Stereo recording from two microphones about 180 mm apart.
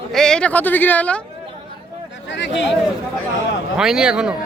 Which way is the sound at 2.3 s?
85° left.